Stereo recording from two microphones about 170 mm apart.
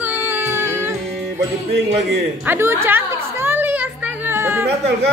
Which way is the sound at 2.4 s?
15° right (ahead or behind).